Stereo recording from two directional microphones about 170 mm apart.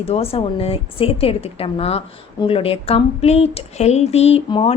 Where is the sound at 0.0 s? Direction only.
35° left (ahead or behind).